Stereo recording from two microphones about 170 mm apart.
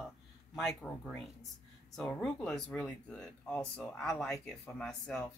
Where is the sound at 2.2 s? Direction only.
5° left (ahead or behind).